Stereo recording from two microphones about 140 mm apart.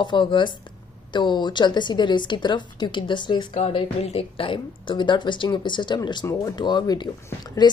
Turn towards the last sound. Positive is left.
turn(degrees=30)  # may be behind; listen again after turning